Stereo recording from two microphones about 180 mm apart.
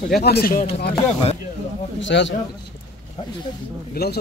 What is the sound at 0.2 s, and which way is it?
Speech, 60° left (ahead or behind).